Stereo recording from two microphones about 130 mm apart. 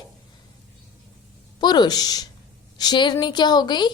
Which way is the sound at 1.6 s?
35° left (ahead or behind).